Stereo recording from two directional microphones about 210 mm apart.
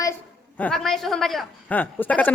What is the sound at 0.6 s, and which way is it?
A woman's voice, 5° left (ahead or behind).